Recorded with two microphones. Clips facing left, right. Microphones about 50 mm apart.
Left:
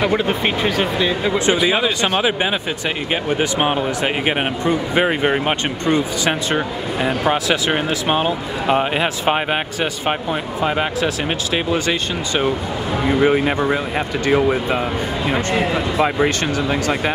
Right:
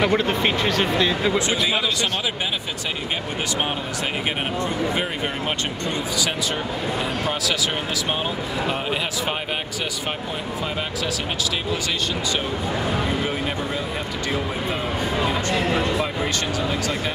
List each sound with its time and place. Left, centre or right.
0.0 s speech: centre
1.7 s speech: left
3.3 s speech: left
10.6 s speech: left
13.2 s speech: left
14.2 s speech: left
15.5 s speech: centre
16.0 s speech: left